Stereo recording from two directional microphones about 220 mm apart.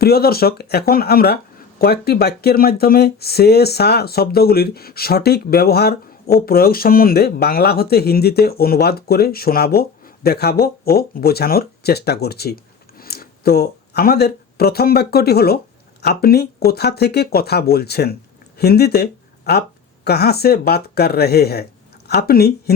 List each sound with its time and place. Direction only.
0.0 s speech: 45° left (ahead or behind)